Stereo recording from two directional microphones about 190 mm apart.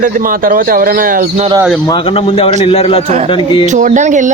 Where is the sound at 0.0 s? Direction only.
45° right (ahead or behind).